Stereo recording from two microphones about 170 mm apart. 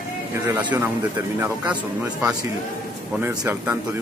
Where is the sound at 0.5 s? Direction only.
10° right (ahead or behind).